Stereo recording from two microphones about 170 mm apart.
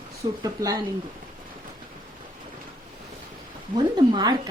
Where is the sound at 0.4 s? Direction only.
20° right (ahead or behind).